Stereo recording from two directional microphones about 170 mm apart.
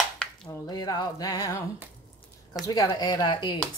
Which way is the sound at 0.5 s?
25° left (ahead or behind).